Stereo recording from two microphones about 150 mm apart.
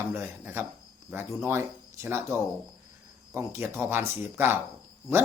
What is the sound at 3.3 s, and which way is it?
Speech, 15° right (ahead or behind).